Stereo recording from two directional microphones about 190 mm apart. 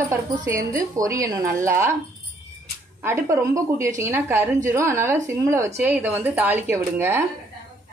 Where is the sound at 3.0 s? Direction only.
15° right (ahead or behind).